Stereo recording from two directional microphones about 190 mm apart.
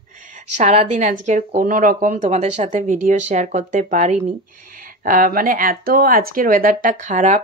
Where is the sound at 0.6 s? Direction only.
35° right (ahead or behind).